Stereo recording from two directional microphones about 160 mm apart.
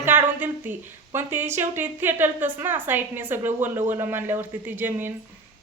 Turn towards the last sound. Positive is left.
turn(degrees=-10)  # may be behind; listen again after turning